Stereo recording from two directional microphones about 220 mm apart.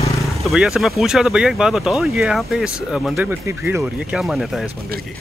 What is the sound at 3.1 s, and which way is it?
Speech, 10° right (ahead or behind).